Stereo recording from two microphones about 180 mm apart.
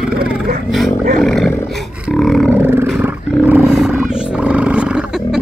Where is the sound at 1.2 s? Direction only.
Centre (ahead or behind).